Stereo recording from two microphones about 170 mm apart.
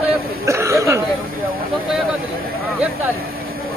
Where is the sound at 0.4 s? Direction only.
15° right (ahead or behind).